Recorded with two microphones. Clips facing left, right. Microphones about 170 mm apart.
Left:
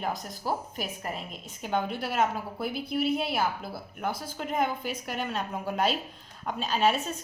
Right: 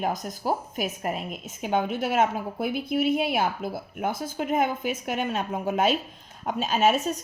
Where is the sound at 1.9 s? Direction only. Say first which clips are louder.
Right 4 dB; 50° right (ahead or behind).